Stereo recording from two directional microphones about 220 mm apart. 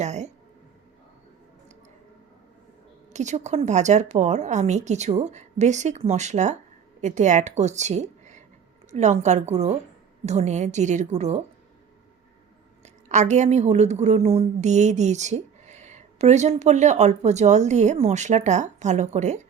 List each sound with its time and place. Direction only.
0.0 s a woman's voice: 30° right (ahead or behind)
3.1 s a woman's voice: 30° right (ahead or behind)
12.8 s a woman's voice: 30° right (ahead or behind)